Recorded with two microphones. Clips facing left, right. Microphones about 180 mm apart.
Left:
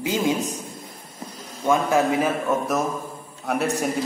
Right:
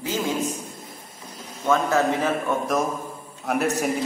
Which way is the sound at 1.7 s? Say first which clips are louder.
Left 1 dB; 10° left (ahead or behind).